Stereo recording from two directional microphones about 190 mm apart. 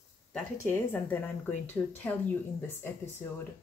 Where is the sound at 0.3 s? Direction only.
10° left (ahead or behind).